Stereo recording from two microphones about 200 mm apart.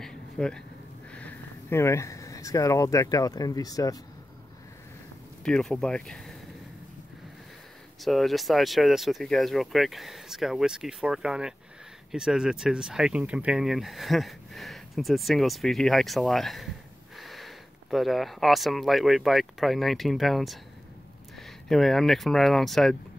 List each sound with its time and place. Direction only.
0.0 s a sound: 5° left (ahead or behind)
1.1 s speech: 10° left (ahead or behind)
5.4 s speech: 5° left (ahead or behind)
8.0 s speech: centre (ahead or behind)